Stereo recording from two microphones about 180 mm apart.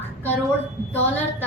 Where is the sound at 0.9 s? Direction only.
10° left (ahead or behind).